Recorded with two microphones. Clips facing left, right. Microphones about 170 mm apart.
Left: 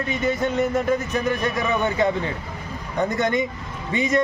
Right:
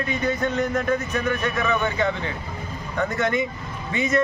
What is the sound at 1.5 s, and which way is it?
Speech, 15° left (ahead or behind).